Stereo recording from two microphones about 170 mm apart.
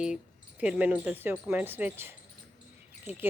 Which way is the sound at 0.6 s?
10° right (ahead or behind).